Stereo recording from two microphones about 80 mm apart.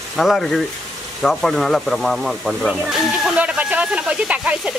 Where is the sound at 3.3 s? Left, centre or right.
Centre.